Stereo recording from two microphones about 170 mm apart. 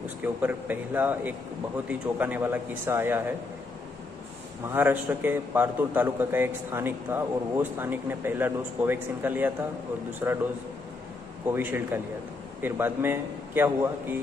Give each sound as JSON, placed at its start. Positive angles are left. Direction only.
{"t": 0.2, "sound": "a man's voice", "side_deg": -10}
{"t": 4.7, "sound": "a man's voice", "side_deg": -10}
{"t": 11.4, "sound": "a man's voice", "side_deg": -10}